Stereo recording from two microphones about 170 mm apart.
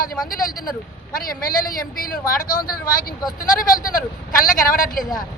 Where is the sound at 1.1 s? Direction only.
60° left (ahead or behind).